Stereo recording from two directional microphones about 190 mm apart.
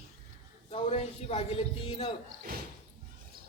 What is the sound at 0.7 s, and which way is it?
A man's voice, 30° left (ahead or behind).